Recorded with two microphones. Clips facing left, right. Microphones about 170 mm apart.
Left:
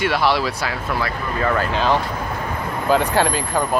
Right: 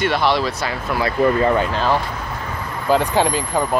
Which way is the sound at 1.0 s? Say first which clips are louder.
Right 9 dB; 25° right (ahead or behind).